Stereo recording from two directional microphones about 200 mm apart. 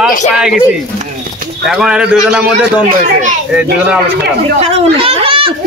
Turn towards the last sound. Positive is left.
turn(degrees=-25)  # may be behind; listen again after turning